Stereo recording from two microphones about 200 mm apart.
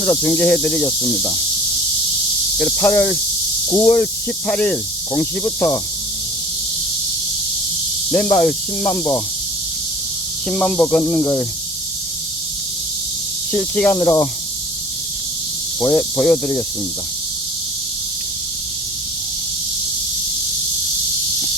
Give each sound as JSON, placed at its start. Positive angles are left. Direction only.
{"t": 0.0, "sound": "speech", "side_deg": 10}
{"t": 0.9, "sound": "speech", "side_deg": 15}
{"t": 2.6, "sound": "speech", "side_deg": 5}
{"t": 8.1, "sound": "speech", "side_deg": 10}
{"t": 10.5, "sound": "speech", "side_deg": 5}
{"t": 13.5, "sound": "speech", "side_deg": 5}
{"t": 15.8, "sound": "speech", "side_deg": 10}